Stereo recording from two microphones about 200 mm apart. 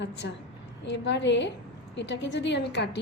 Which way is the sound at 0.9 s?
60° left (ahead or behind).